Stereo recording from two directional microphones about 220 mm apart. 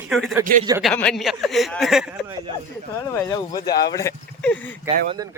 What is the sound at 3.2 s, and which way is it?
Speech, 20° left (ahead or behind).